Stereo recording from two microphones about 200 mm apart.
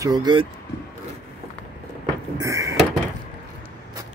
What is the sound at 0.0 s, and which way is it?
Speech, 20° right (ahead or behind).